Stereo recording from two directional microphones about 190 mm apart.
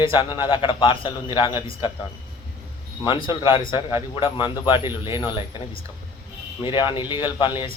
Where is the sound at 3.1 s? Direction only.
25° left (ahead or behind).